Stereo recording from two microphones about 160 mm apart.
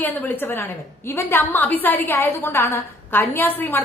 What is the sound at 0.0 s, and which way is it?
A woman's voice, 10° left (ahead or behind).